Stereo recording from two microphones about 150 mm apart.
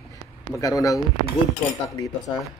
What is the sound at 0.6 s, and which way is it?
Speech, 20° left (ahead or behind).